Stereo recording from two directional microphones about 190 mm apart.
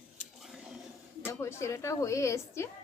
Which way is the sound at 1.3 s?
15° left (ahead or behind).